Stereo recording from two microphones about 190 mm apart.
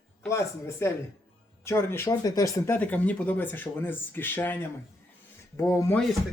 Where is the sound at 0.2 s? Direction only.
15° left (ahead or behind).